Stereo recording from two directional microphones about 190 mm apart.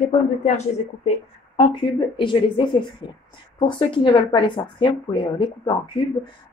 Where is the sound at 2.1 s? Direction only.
25° left (ahead or behind).